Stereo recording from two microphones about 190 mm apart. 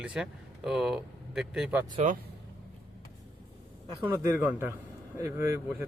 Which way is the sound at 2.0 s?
35° right (ahead or behind).